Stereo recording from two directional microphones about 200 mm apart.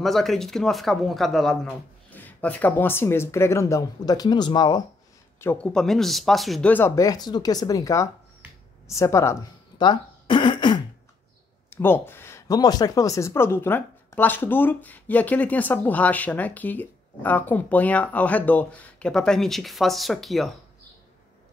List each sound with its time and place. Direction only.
0.0 s speech: centre (ahead or behind); by 4.8 s 20° left (ahead or behind)
5.4 s speech: 10° left (ahead or behind)
11.7 s speech: 10° left (ahead or behind)